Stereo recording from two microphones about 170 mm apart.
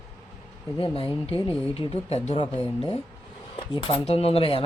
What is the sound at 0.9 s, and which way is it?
Speech, 30° left (ahead or behind).